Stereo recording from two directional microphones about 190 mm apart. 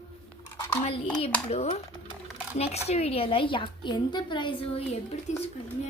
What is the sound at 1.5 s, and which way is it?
Child singing, 35° left (ahead or behind).